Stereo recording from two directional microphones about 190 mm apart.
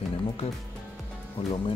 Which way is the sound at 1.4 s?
30° left (ahead or behind).